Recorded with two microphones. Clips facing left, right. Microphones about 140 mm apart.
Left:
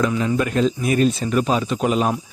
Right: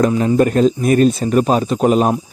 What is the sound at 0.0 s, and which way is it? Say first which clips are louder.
Speech: right 7 dB; 40° right (ahead or behind).